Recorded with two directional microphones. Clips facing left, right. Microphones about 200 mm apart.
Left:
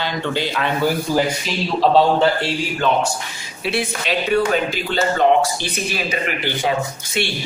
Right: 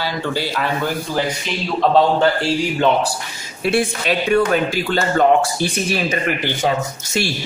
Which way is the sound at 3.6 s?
50° right (ahead or behind).